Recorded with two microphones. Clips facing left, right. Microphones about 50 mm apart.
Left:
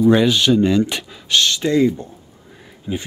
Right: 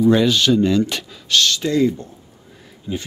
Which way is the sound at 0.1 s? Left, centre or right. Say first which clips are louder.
Left 1 dB; centre.